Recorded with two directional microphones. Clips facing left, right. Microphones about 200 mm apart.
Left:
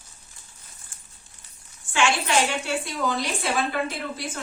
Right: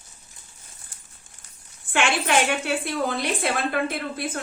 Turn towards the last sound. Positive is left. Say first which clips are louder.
# right 2 dB
turn(degrees=-55)  # may be behind; listen again after turning